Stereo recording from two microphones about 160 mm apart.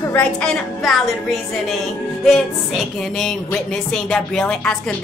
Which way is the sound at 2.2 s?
Centre (ahead or behind).